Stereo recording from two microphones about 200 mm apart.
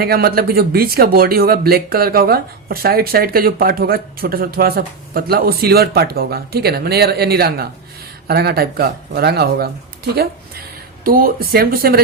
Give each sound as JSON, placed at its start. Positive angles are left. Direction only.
{"t": 0.0, "sound": "speech", "side_deg": -50}